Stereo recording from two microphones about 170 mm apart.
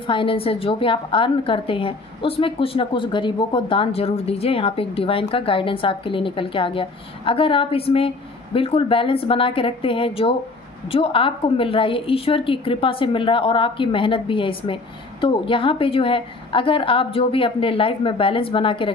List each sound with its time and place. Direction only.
0.0 s a woman's voice: 30° left (ahead or behind)